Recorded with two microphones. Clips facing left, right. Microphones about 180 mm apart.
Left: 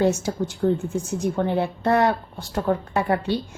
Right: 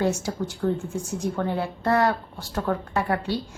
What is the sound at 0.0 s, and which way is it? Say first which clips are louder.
A woman's voice: left 4 dB; 20° left (ahead or behind).